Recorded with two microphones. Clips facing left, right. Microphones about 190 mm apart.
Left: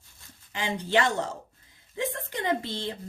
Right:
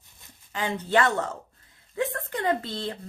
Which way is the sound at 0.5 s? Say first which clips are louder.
Right 2 dB; 25° left (ahead or behind).